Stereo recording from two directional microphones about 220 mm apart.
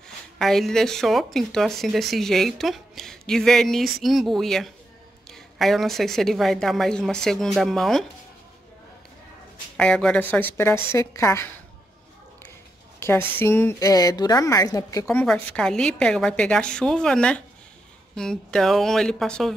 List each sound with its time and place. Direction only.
0.4 s speech: centre (ahead or behind)
9.8 s a woman's voice: 5° left (ahead or behind)
13.0 s a woman's voice: 10° left (ahead or behind)